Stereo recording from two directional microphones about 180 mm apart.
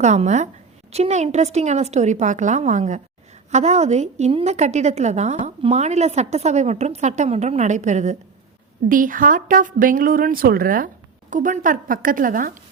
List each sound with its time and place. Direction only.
0.0 s a woman's voice: 40° right (ahead or behind)